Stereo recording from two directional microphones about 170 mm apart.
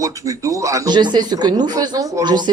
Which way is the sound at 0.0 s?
20° right (ahead or behind).